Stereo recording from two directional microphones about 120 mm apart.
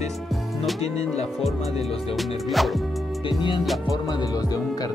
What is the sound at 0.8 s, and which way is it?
Speech, 60° left (ahead or behind).